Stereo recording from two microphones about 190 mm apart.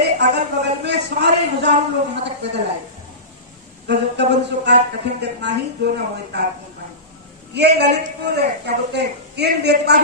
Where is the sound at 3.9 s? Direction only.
65° right (ahead or behind).